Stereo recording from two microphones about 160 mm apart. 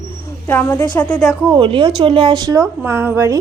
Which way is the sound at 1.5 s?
30° right (ahead or behind).